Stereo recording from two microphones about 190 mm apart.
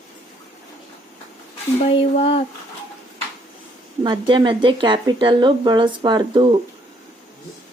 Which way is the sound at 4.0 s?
25° right (ahead or behind).